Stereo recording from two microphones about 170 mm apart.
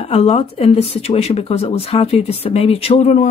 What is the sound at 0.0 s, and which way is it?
Speech, 40° left (ahead or behind).